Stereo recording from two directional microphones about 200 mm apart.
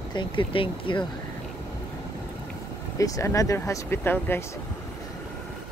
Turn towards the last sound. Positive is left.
turn(degrees=10)  # may be behind; listen again after turning